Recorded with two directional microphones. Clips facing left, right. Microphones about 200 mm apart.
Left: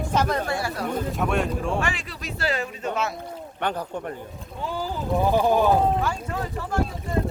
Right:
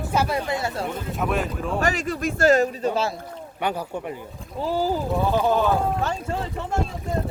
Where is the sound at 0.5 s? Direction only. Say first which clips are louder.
Right 1 dB; 25° right (ahead or behind).